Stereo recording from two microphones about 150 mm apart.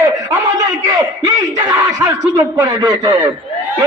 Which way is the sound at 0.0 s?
25° right (ahead or behind).